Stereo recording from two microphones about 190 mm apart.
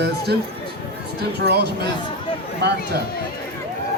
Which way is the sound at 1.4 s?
60° right (ahead or behind).